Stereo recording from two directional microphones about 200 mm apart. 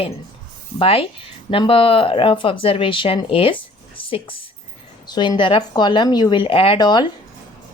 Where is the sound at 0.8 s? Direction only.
25° left (ahead or behind).